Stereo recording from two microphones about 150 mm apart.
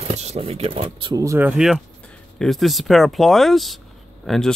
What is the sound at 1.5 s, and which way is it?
Speech, centre (ahead or behind).